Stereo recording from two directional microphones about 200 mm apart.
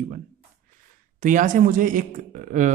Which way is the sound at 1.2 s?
40° right (ahead or behind).